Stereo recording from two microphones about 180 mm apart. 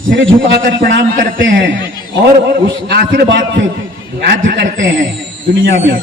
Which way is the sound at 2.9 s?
65° right (ahead or behind).